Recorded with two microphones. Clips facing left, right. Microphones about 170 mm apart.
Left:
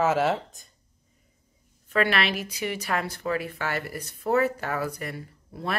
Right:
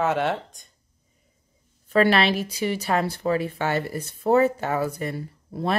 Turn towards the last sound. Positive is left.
turn(degrees=-30)  # may be behind; listen again after turning